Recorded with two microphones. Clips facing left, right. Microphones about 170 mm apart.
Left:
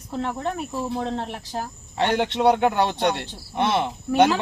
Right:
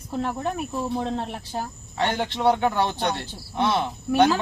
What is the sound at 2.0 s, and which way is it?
Speech, 20° left (ahead or behind).